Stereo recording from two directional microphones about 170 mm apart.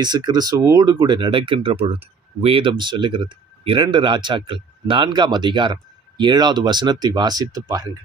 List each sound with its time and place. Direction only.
0.0 s speech: 25° right (ahead or behind)